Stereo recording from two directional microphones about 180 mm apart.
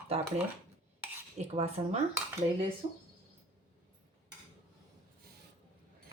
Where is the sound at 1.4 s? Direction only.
35° right (ahead or behind).